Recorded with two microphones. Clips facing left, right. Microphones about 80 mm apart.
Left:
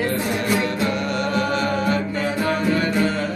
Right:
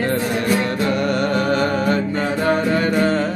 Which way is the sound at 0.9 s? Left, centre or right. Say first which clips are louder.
Right 4 dB; right.